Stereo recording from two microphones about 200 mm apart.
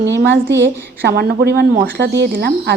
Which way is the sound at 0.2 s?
60° right (ahead or behind).